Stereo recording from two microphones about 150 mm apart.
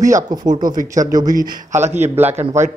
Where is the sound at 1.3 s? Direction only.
60° right (ahead or behind).